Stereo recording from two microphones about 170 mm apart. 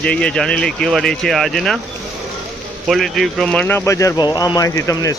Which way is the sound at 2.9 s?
Centre (ahead or behind).